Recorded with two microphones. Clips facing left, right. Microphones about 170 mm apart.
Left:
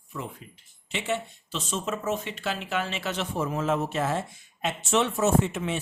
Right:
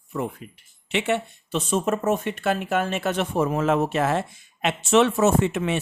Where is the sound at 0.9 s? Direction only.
65° right (ahead or behind).